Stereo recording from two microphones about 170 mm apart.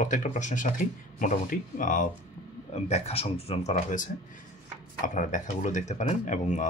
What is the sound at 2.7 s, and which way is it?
Speech, 35° left (ahead or behind).